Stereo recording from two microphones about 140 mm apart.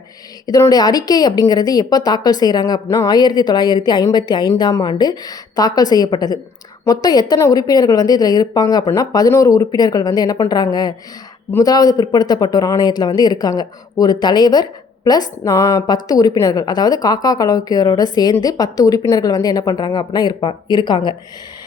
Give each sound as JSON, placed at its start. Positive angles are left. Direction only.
{"t": 0.4, "sound": "speech", "side_deg": 25}